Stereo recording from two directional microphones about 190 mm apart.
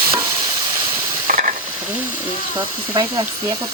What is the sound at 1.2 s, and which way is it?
Hiss, 45° right (ahead or behind).